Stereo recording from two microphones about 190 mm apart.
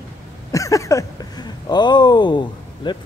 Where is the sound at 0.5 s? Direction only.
15° left (ahead or behind).